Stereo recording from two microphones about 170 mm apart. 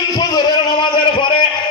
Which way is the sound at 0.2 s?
25° left (ahead or behind).